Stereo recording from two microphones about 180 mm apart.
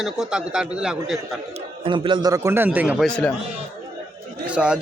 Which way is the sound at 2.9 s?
5° left (ahead or behind).